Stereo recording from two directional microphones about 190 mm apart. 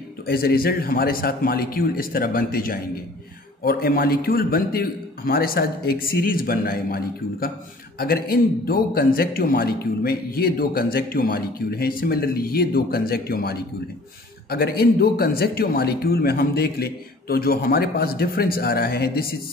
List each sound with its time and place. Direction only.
0.3 s a man's voice: 55° left (ahead or behind)